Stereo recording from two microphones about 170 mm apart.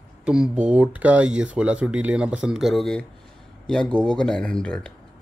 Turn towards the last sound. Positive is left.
turn(degrees=5)  # may be behind; listen again after turning